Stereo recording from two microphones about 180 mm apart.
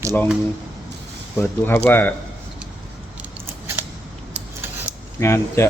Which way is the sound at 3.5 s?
15° right (ahead or behind).